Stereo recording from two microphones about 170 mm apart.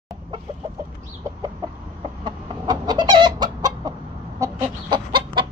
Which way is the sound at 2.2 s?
25° right (ahead or behind).